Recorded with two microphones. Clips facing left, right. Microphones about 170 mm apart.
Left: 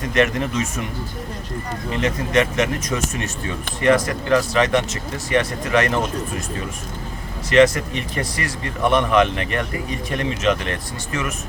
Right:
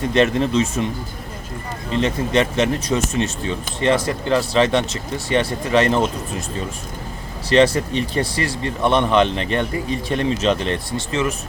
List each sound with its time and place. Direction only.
0.1 s speech: 30° right (ahead or behind)
1.9 s speech: 30° right (ahead or behind)
7.5 s speech: 30° right (ahead or behind)